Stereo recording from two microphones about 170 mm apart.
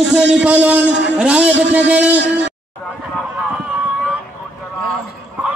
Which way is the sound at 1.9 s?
5° right (ahead or behind).